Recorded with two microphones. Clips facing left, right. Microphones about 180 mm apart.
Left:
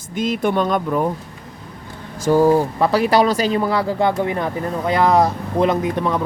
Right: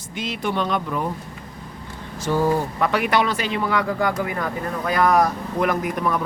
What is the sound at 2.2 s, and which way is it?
Speech, 45° left (ahead or behind).